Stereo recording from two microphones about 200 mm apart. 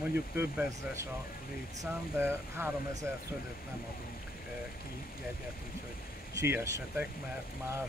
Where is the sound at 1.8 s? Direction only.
10° right (ahead or behind).